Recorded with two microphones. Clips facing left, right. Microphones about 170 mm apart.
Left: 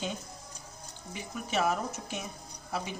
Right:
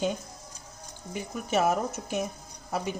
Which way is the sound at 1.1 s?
45° right (ahead or behind).